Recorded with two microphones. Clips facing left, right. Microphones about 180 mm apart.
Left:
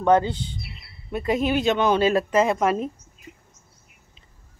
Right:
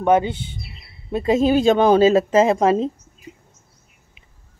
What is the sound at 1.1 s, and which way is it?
Speech, 30° right (ahead or behind).